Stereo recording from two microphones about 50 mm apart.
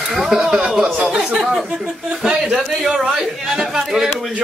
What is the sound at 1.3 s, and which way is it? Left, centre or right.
Speech, right.